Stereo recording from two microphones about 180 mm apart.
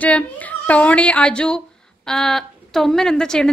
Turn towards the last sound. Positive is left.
turn(degrees=5)  # may be behind; listen again after turning